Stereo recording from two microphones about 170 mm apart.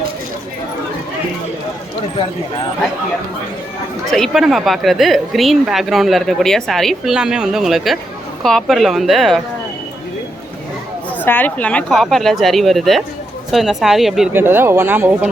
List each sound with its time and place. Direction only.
4.1 s a woman's voice: centre (ahead or behind)
11.2 s a woman's voice: 10° left (ahead or behind)
14.3 s speech: 15° right (ahead or behind)